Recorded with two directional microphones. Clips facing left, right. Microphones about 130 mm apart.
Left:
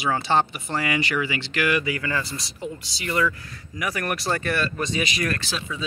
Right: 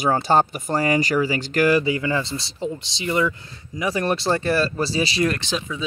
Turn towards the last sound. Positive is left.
turn(degrees=-20)  # may be behind; listen again after turning